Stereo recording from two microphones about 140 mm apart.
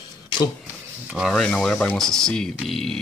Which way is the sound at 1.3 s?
5° left (ahead or behind).